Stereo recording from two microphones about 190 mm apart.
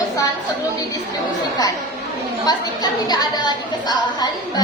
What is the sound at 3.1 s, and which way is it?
A woman's voice, 20° left (ahead or behind).